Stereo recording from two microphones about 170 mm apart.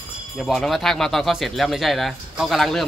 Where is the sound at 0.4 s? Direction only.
Centre (ahead or behind).